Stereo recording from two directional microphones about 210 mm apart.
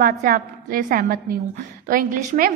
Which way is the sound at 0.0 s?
45° right (ahead or behind).